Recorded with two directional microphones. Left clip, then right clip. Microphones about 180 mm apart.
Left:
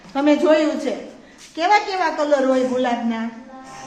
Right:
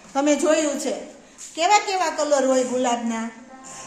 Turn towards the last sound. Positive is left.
turn(degrees=-10)  # may be behind; listen again after turning